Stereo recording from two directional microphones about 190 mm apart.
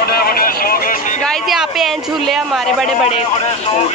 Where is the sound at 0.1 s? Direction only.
50° left (ahead or behind).